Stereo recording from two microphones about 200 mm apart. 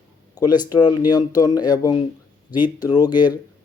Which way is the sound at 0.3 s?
20° left (ahead or behind).